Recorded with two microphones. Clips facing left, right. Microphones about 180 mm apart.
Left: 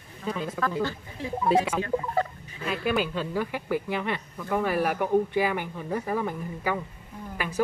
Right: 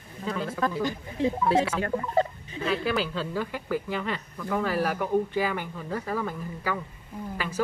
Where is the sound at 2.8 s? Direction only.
15° left (ahead or behind).